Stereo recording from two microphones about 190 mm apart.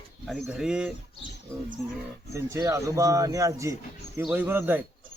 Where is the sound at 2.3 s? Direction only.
15° right (ahead or behind).